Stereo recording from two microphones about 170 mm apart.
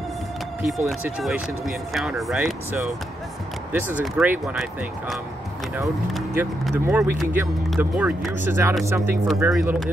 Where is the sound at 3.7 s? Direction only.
10° right (ahead or behind).